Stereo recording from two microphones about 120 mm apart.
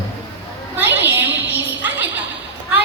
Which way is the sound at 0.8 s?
15° right (ahead or behind).